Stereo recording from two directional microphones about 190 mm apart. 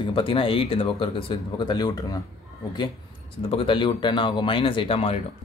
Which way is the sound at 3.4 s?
25° left (ahead or behind).